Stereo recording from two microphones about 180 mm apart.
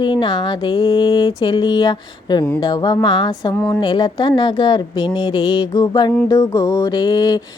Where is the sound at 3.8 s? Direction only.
25° left (ahead or behind).